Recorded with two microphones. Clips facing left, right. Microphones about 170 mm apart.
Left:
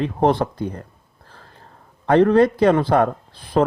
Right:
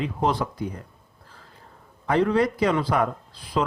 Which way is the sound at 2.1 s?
60° left (ahead or behind).